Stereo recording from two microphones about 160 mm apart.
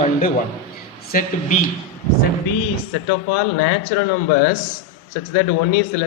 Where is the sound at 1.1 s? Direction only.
60° left (ahead or behind).